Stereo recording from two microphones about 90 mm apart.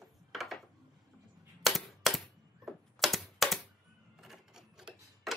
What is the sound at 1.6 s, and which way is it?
Typewriter, centre (ahead or behind).